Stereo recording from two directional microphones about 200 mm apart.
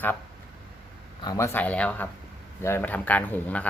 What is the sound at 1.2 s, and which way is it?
Speech, 15° left (ahead or behind).